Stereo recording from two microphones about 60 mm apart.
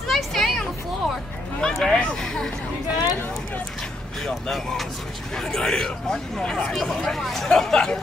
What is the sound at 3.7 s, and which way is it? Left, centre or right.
Vehicle, centre.